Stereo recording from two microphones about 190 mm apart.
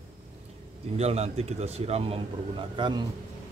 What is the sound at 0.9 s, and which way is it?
Speech, 35° right (ahead or behind).